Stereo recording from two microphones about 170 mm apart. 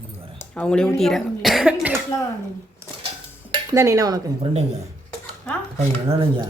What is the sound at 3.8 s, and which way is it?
Speech, 20° right (ahead or behind).